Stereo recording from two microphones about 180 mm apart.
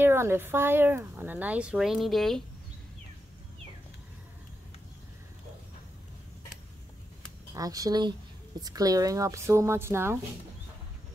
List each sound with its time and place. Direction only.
0.0 s speech: 15° right (ahead or behind)
7.5 s speech: 20° right (ahead or behind)